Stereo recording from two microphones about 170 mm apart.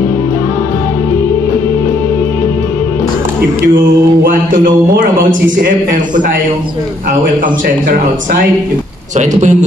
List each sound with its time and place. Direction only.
9.2 s a man's voice: 45° right (ahead or behind)